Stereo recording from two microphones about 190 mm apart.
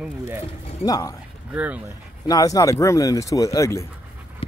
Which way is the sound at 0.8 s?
20° left (ahead or behind).